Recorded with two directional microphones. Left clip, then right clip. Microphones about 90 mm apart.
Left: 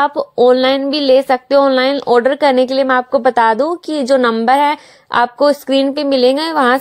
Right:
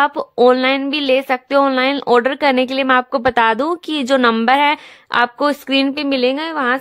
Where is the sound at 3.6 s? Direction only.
30° right (ahead or behind).